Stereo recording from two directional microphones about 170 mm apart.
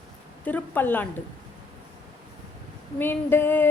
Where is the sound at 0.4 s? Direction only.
10° left (ahead or behind).